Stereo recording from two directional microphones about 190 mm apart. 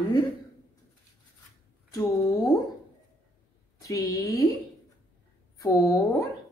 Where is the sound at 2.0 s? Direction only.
20° left (ahead or behind).